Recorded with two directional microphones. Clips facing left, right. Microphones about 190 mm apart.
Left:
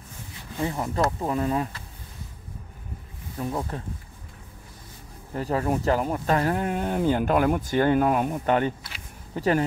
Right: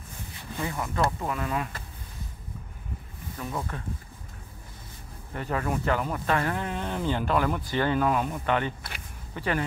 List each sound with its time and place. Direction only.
0.6 s speech: 30° left (ahead or behind)
3.3 s speech: 30° left (ahead or behind)
5.3 s speech: 35° left (ahead or behind)